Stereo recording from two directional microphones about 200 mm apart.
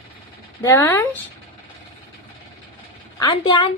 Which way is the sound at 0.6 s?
15° left (ahead or behind).